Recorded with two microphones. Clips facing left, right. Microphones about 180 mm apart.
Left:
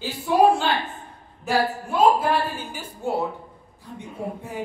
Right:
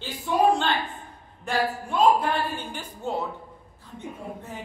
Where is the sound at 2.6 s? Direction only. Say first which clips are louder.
Left 1 dB; 10° left (ahead or behind).